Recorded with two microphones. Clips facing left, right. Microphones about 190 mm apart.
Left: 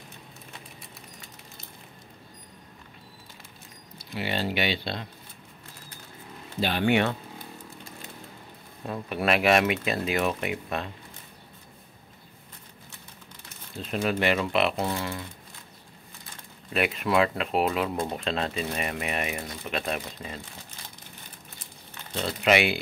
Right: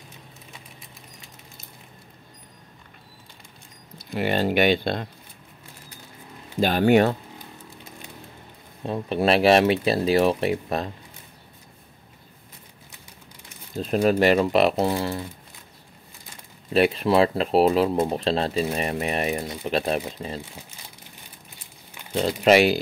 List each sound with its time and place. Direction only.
4.1 s speech: 50° right (ahead or behind)
6.6 s speech: 45° right (ahead or behind)
8.8 s speech: 30° right (ahead or behind)
13.7 s speech: 40° right (ahead or behind)
16.7 s speech: 30° right (ahead or behind)
21.5 s crumpling: 10° right (ahead or behind)
22.4 s speech: 40° right (ahead or behind)